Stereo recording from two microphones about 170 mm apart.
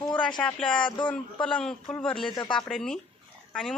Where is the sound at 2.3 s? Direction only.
30° left (ahead or behind).